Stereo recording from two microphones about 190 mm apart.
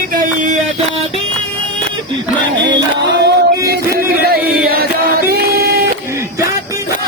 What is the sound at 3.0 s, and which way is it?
Music, 65° right (ahead or behind).